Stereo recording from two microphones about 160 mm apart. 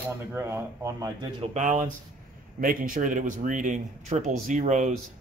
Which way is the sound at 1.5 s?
50° right (ahead or behind).